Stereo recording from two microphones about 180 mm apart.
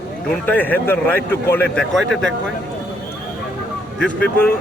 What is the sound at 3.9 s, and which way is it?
Speech, 5° left (ahead or behind).